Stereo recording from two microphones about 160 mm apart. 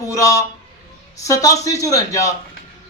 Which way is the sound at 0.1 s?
20° left (ahead or behind).